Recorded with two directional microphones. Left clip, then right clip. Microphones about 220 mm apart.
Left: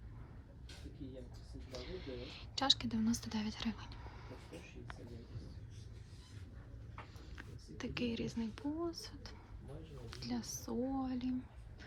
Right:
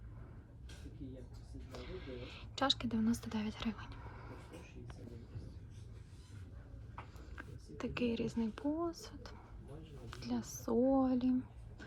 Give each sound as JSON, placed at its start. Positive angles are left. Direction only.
{"t": 1.7, "sound": "speech", "side_deg": 5}
{"t": 7.3, "sound": "speech", "side_deg": 5}